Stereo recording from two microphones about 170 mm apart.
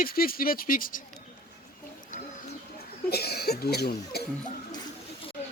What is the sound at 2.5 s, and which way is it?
Speech, 70° left (ahead or behind).